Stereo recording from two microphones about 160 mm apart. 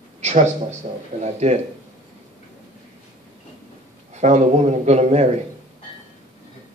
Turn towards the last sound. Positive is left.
turn(degrees=-45)  # may be behind; listen again after turning